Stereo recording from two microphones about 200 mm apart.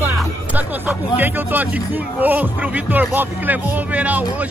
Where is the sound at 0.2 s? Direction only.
10° right (ahead or behind).